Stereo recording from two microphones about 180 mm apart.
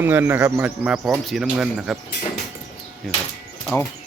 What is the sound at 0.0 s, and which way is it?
Speech, 10° right (ahead or behind).